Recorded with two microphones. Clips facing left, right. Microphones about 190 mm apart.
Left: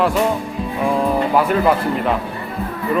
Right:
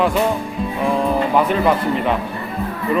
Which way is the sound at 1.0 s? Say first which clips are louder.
Even; 5° left (ahead or behind).